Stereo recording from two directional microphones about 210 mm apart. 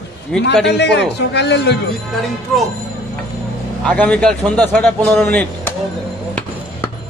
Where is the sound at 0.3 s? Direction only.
5° left (ahead or behind).